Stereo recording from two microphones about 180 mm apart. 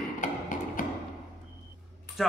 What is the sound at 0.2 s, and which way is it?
Music, 45° left (ahead or behind).